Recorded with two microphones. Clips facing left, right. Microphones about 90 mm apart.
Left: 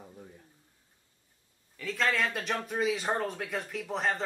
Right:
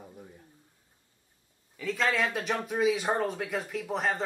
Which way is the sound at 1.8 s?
5° right (ahead or behind).